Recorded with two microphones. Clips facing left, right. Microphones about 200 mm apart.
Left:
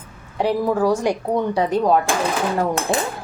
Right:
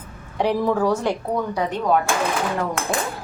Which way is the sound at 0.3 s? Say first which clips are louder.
Left 1 dB; 5° left (ahead or behind).